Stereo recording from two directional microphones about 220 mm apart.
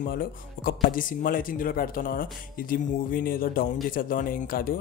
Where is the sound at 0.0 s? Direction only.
40° left (ahead or behind).